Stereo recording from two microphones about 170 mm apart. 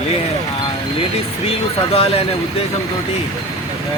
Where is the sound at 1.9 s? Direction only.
35° left (ahead or behind).